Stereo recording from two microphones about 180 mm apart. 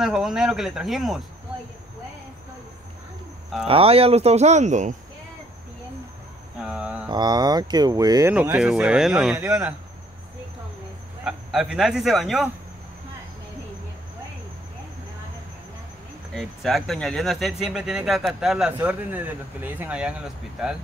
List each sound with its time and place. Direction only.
0.0 s speech: 5° right (ahead or behind)
3.6 s speech: 30° right (ahead or behind)
6.6 s a sound: 5° right (ahead or behind)
7.1 s speech: 20° right (ahead or behind)
8.4 s a man's voice: 5° right (ahead or behind)
11.2 s speech: 5° right (ahead or behind)
16.3 s speech: centre (ahead or behind)